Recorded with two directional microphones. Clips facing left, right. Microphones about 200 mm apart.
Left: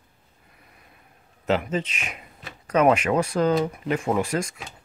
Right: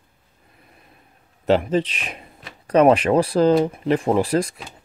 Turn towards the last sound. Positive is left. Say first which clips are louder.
# right 5 dB
turn(degrees=-35)  # may be behind; listen again after turning